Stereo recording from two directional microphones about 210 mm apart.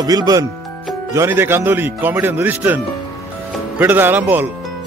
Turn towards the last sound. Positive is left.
turn(degrees=-10)  # may be behind; listen again after turning